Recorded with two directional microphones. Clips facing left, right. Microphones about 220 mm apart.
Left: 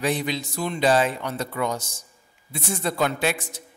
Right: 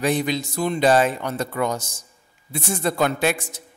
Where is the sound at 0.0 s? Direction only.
45° right (ahead or behind).